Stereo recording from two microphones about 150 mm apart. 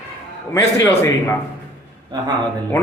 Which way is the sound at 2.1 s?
30° right (ahead or behind).